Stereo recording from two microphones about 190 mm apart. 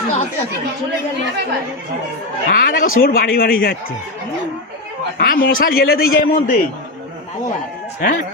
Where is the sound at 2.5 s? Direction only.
45° left (ahead or behind).